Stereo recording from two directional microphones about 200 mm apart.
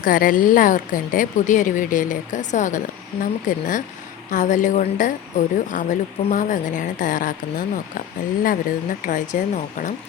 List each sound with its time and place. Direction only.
0.0 s speech: 45° left (ahead or behind)